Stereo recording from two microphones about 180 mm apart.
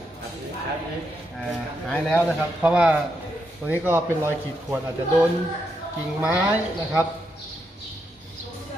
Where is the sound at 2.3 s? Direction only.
5° right (ahead or behind).